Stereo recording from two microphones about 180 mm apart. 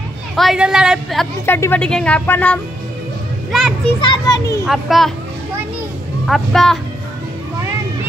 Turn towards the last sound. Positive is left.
turn(degrees=0)  # may be behind; listen again after turning